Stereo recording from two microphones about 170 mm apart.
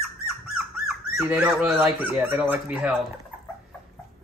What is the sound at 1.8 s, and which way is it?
A man's voice, 10° right (ahead or behind).